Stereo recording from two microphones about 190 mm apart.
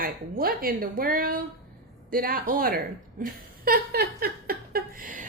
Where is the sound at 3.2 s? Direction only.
50° right (ahead or behind).